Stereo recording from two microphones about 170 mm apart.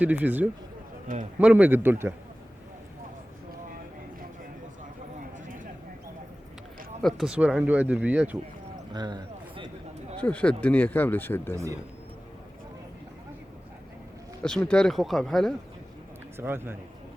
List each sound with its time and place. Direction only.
0.0 s speech: 10° right (ahead or behind)
1.0 s speech: 50° right (ahead or behind)
1.4 s speech: 10° right (ahead or behind)
7.0 s speech: centre (ahead or behind)
8.9 s a sound: 25° right (ahead or behind)
10.2 s speech: 5° left (ahead or behind)
14.4 s speech: 5° left (ahead or behind)
16.4 s speech: 15° right (ahead or behind)